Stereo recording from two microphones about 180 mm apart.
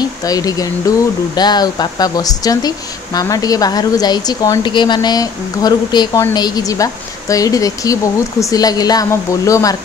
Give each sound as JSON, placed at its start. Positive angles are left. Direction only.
{"t": 0.2, "sound": "speech", "side_deg": 20}